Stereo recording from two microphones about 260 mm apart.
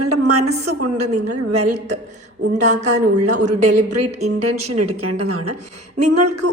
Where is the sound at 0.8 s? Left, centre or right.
Right.